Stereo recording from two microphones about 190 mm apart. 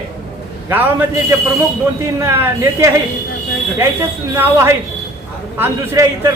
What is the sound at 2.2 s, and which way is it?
Speech, 15° right (ahead or behind).